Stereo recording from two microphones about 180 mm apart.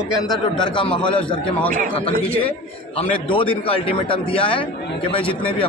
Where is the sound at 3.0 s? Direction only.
30° left (ahead or behind).